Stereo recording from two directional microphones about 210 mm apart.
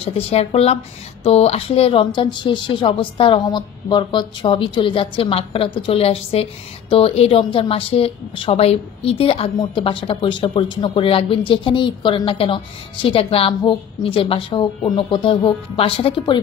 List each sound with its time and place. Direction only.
0.0 s speech: 30° left (ahead or behind)